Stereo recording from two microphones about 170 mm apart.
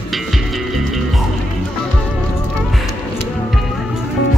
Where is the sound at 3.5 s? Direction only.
Centre (ahead or behind).